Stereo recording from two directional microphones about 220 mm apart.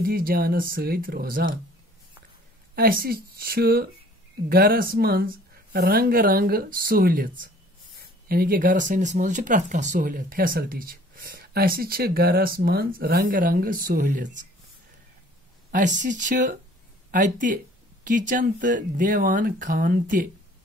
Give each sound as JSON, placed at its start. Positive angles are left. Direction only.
{"t": 0.0, "sound": "speech", "side_deg": -40}
{"t": 2.7, "sound": "speech", "side_deg": -40}
{"t": 15.7, "sound": "speech", "side_deg": -35}